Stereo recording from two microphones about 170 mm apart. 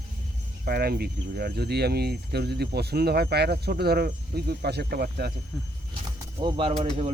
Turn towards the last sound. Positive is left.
turn(degrees=-35)  # may be behind; listen again after turning